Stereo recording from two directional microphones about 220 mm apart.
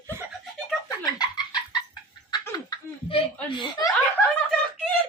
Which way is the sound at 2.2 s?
15° left (ahead or behind).